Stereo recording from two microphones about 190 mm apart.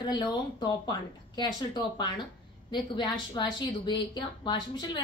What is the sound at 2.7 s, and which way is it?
A woman's voice, 25° left (ahead or behind).